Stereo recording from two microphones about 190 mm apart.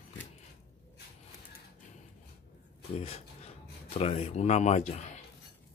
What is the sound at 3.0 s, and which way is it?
Speech, 35° left (ahead or behind).